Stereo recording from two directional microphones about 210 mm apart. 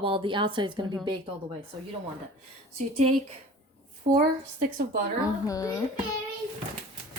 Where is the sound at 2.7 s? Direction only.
30° right (ahead or behind).